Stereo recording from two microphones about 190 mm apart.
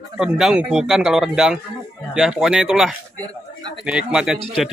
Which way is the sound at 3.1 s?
20° right (ahead or behind).